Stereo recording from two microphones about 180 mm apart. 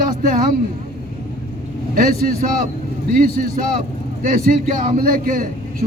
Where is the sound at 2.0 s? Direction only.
50° right (ahead or behind).